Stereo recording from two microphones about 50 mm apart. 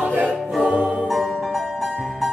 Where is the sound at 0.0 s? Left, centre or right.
Right.